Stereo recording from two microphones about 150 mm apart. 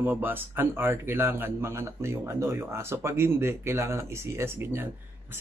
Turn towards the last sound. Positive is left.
turn(degrees=-15)  # may be behind; listen again after turning